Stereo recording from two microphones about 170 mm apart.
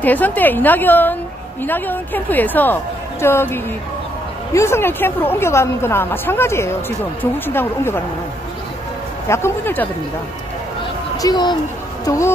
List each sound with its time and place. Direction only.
0.0 s speech: 10° left (ahead or behind)
9.3 s speech: 15° left (ahead or behind)
11.1 s speech: 25° left (ahead or behind)